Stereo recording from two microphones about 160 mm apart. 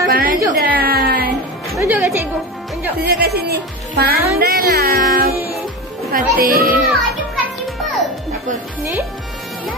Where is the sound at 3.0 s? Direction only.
75° right (ahead or behind).